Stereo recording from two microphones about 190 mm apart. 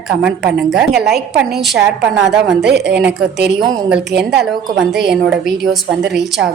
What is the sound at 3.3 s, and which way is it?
Speech, 65° right (ahead or behind).